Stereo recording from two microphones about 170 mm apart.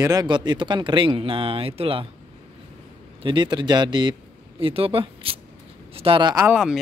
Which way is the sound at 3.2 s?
30° right (ahead or behind).